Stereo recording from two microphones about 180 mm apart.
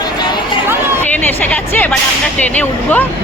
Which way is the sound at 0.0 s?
25° left (ahead or behind).